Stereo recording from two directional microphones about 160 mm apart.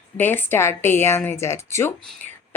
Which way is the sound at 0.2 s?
15° left (ahead or behind).